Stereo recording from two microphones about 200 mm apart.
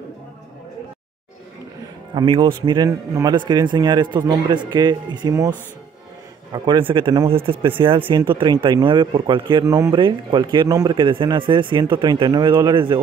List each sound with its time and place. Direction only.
2.1 s a man's voice: 25° right (ahead or behind)
6.5 s a man's voice: 20° right (ahead or behind)